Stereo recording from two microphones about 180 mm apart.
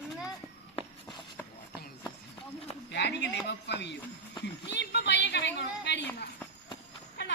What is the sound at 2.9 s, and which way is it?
Speech, 70° left (ahead or behind).